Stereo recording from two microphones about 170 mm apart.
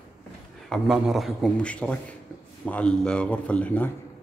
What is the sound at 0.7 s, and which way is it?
A man's voice, centre (ahead or behind).